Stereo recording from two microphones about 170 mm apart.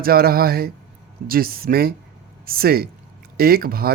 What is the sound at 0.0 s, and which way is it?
Speech, 65° right (ahead or behind).